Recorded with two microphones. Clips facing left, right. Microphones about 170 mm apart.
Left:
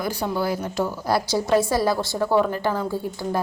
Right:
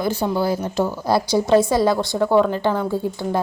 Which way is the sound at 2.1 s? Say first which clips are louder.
Right 4 dB; 5° left (ahead or behind).